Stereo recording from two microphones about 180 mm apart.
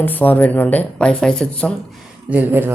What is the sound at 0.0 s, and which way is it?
Speech, 10° left (ahead or behind).